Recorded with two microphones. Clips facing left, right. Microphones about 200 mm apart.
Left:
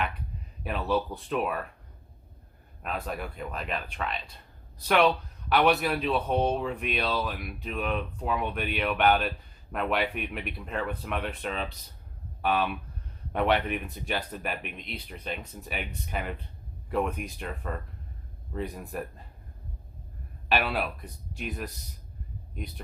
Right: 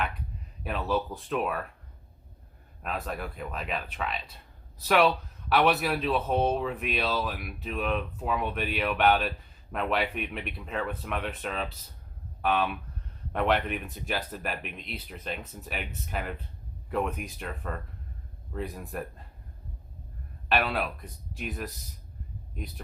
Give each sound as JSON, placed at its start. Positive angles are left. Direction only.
{"t": 0.6, "sound": "speech", "side_deg": 0}
{"t": 2.8, "sound": "speech", "side_deg": 0}
{"t": 20.5, "sound": "speech", "side_deg": 0}